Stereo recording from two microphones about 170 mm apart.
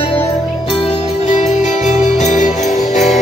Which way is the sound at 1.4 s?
45° left (ahead or behind).